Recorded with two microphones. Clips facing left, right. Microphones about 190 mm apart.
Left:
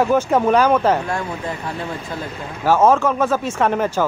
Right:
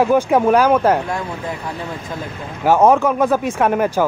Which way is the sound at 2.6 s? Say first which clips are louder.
Right 2 dB; 15° right (ahead or behind).